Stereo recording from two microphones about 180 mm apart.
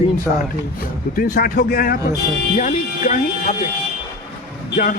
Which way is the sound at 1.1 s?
55° left (ahead or behind).